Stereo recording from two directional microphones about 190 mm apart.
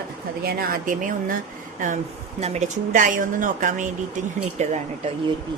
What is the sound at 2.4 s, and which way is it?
A woman's voice, 35° right (ahead or behind).